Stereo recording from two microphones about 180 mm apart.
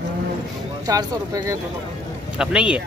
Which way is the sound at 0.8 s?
20° right (ahead or behind).